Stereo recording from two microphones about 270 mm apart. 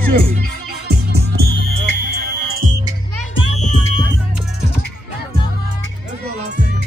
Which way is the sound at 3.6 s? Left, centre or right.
Left.